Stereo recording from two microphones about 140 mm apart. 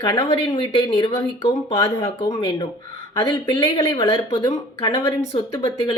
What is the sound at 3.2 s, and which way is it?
Speech, 25° left (ahead or behind).